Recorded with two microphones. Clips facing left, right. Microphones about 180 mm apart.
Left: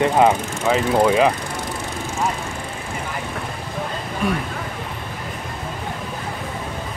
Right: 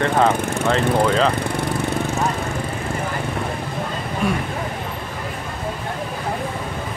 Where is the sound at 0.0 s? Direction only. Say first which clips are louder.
Left 2 dB; 10° left (ahead or behind).